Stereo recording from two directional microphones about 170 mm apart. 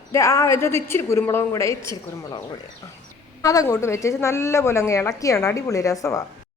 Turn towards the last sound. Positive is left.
turn(degrees=20)  # may be behind; listen again after turning